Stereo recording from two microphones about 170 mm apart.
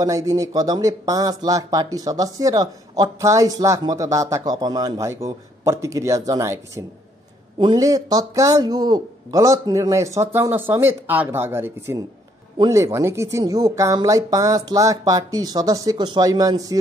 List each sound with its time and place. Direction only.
0.0 s speech: 20° right (ahead or behind)